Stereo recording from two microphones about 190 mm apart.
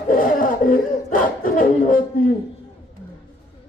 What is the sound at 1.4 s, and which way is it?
Music, 45° left (ahead or behind).